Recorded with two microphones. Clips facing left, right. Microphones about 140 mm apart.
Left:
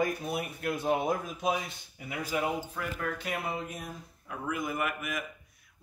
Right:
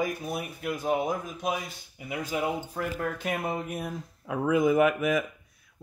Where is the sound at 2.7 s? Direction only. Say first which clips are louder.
Right 4 dB; 45° right (ahead or behind).